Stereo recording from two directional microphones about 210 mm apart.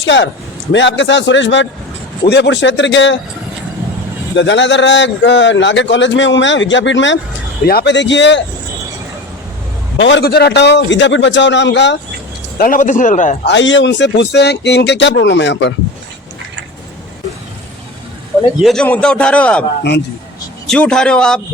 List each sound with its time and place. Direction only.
0.0 s a man's voice: 60° left (ahead or behind)
4.4 s a man's voice: 60° left (ahead or behind)
7.6 s a man's voice: 45° left (ahead or behind)
10.0 s a man's voice: 55° left (ahead or behind)
12.5 s a man's voice: 40° left (ahead or behind)
13.4 s a man's voice: 60° left (ahead or behind)
18.6 s a man's voice: 5° left (ahead or behind)
20.7 s a man's voice: 5° left (ahead or behind)